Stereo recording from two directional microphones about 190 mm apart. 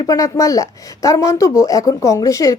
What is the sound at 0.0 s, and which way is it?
A woman's voice, 20° left (ahead or behind).